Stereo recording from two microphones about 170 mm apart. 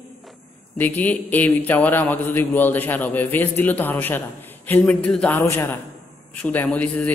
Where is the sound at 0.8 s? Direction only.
10° left (ahead or behind).